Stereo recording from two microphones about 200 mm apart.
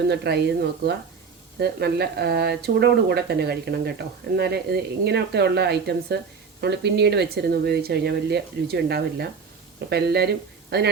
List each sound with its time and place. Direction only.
0.1 s speech: 55° right (ahead or behind)
1.5 s speech: 55° right (ahead or behind)